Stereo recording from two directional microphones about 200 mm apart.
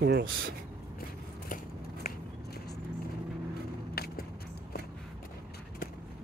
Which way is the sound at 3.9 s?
50° left (ahead or behind).